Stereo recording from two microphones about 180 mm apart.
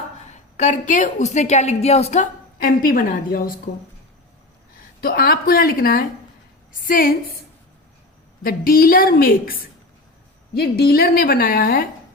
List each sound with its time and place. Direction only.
0.5 s a woman's voice: 45° left (ahead or behind)
2.6 s a woman's voice: 50° left (ahead or behind)
4.9 s a woman's voice: 55° left (ahead or behind)
8.4 s a woman's voice: 55° left (ahead or behind)